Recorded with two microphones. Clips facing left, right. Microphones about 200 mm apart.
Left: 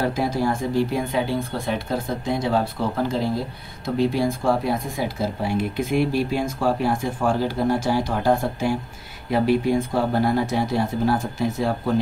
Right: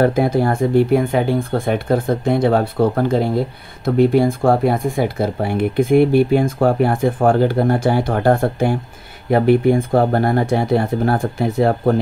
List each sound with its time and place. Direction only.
0.0 s speech: 55° right (ahead or behind)